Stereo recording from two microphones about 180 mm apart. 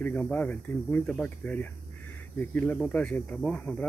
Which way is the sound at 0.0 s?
10° left (ahead or behind).